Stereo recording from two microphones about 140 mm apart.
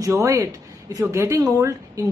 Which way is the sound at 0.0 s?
20° right (ahead or behind).